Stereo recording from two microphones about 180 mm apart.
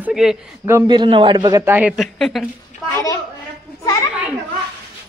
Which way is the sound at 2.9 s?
20° left (ahead or behind).